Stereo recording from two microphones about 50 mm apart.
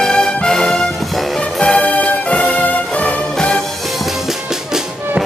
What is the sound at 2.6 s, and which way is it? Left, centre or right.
Music, left.